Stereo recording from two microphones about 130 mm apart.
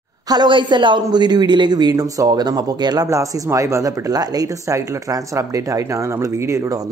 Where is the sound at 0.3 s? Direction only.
35° right (ahead or behind).